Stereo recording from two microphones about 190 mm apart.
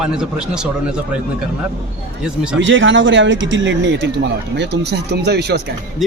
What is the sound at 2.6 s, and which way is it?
Speech, 75° right (ahead or behind).